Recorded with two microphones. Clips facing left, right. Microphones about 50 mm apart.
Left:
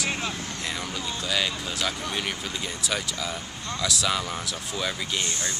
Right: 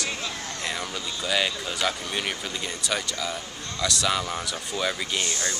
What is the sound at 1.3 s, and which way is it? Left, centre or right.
Speech, centre.